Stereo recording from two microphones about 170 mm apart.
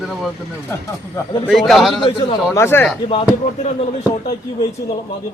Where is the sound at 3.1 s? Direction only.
35° left (ahead or behind).